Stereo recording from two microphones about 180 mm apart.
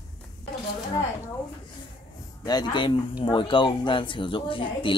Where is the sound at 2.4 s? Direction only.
25° left (ahead or behind).